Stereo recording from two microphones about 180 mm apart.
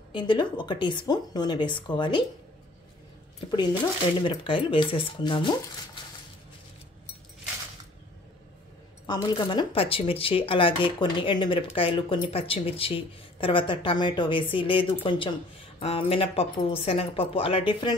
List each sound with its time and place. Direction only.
0.1 s speech: 25° left (ahead or behind)
4.2 s speech: 30° left (ahead or behind)
9.0 s speech: 25° left (ahead or behind)